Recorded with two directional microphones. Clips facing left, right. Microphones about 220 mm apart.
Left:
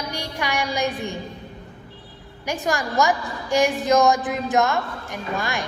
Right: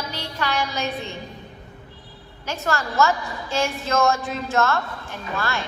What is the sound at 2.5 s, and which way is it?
A woman's voice, 15° left (ahead or behind).